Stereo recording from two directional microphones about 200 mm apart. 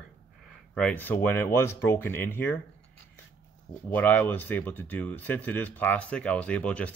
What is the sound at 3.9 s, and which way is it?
A man's voice, 10° left (ahead or behind).